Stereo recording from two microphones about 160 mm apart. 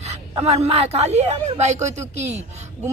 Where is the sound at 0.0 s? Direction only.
40° right (ahead or behind).